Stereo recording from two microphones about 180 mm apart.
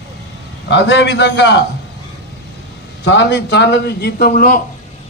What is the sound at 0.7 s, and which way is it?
Speech, 80° left.